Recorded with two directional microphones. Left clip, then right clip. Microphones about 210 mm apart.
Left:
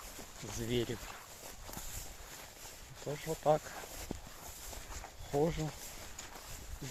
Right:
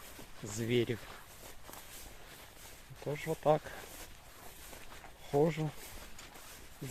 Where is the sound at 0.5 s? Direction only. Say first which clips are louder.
Right 4 dB; 30° right (ahead or behind).